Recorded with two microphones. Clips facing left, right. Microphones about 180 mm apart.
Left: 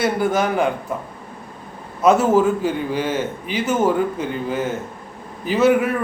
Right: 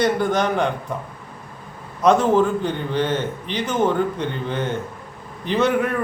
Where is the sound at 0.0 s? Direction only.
5° left (ahead or behind).